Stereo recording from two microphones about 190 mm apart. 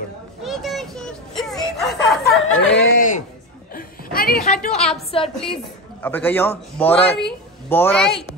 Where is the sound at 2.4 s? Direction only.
90° left.